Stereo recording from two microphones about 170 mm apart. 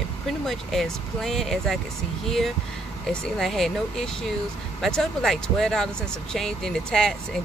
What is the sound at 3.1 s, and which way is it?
Speech, centre (ahead or behind).